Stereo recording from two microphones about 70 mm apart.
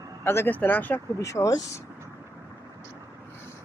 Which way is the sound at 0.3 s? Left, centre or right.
Left.